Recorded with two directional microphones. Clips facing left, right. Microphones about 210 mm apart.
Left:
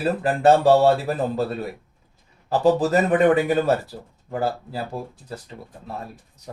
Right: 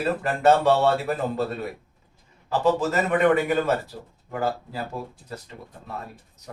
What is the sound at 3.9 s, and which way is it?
Speech, 35° left (ahead or behind).